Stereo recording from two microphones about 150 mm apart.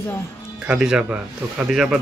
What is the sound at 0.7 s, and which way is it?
Speech, 5° right (ahead or behind).